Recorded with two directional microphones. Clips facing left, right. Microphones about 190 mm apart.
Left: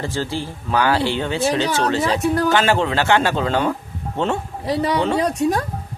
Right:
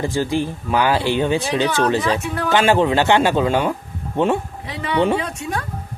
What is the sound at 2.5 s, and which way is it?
Speech, 15° right (ahead or behind).